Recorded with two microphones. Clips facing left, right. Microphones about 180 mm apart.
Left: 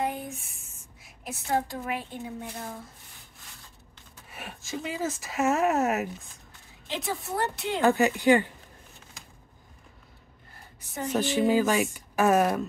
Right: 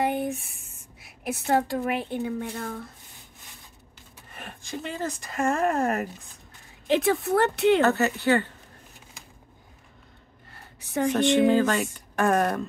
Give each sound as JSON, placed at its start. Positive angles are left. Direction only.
{"t": 0.0, "sound": "a sound", "side_deg": -65}
{"t": 0.9, "sound": "a woman's voice", "side_deg": -65}
{"t": 4.3, "sound": "speech", "side_deg": 5}
{"t": 6.9, "sound": "a woman's voice", "side_deg": -65}
{"t": 7.8, "sound": "speech", "side_deg": 15}
{"t": 10.8, "sound": "a sound", "side_deg": -75}
{"t": 11.1, "sound": "speech", "side_deg": 5}